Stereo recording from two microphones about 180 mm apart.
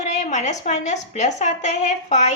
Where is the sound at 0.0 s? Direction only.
40° left (ahead or behind).